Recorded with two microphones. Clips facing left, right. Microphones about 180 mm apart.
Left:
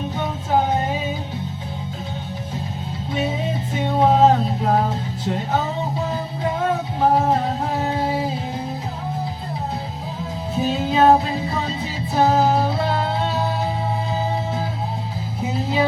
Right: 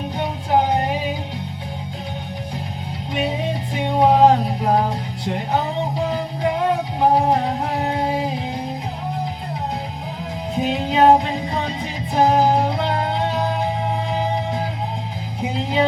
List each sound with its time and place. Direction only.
0.2 s music: 15° right (ahead or behind)
3.8 s music: 15° right (ahead or behind)
7.8 s a sound: 15° right (ahead or behind)
10.5 s music: 15° right (ahead or behind)
15.4 s music: 15° right (ahead or behind)